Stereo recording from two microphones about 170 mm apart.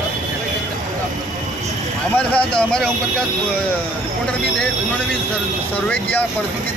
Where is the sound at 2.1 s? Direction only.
5° left (ahead or behind).